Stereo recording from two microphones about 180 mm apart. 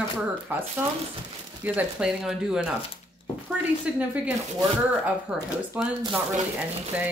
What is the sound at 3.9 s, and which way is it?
Speech, 5° right (ahead or behind).